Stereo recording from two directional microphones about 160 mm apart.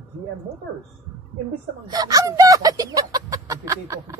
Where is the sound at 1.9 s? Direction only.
25° right (ahead or behind).